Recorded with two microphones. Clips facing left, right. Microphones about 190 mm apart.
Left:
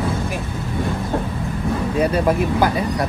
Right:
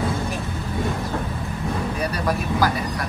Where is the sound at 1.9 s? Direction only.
25° left (ahead or behind).